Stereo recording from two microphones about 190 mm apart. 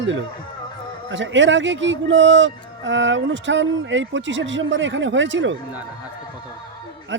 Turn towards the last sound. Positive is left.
turn(degrees=-75)  # may be behind; listen again after turning